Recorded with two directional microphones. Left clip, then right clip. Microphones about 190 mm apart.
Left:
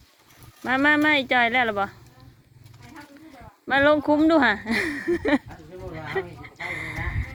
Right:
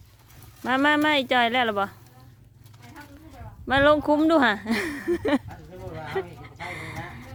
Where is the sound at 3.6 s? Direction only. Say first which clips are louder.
Even; 25° right (ahead or behind).